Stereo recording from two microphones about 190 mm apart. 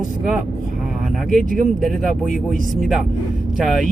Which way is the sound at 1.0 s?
Centre (ahead or behind).